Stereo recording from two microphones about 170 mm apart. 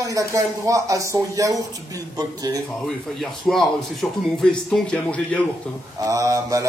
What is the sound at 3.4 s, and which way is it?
Speech, centre (ahead or behind).